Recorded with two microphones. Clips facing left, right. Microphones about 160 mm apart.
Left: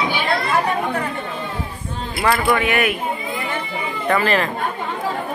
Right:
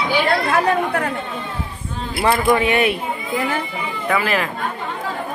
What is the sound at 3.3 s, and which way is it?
Children playing, 90° right.